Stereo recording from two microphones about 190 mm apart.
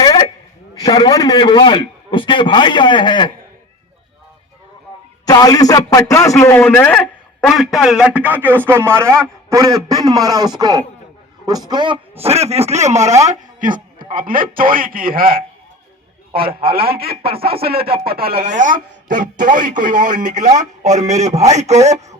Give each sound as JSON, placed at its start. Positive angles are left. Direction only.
{"t": 0.0, "sound": "a sound", "side_deg": 20}
{"t": 0.8, "sound": "a man's voice", "side_deg": 25}
{"t": 5.2, "sound": "a man's voice", "side_deg": 20}
{"t": 16.6, "sound": "speech", "side_deg": -50}